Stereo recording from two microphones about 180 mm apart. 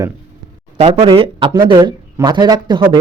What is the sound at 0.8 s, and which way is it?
Speech, 30° right (ahead or behind).